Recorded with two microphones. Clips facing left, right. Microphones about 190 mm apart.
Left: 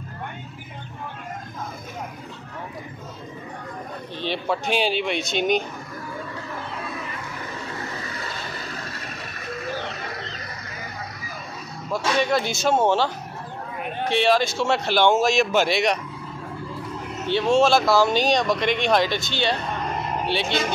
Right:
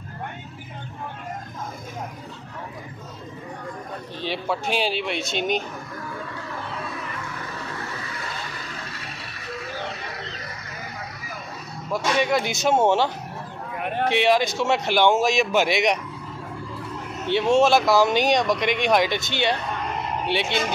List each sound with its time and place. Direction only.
4.2 s speech: 5° right (ahead or behind)
11.9 s speech: 15° right (ahead or behind)
14.1 s speech: 15° right (ahead or behind)
17.6 s speech: 20° right (ahead or behind)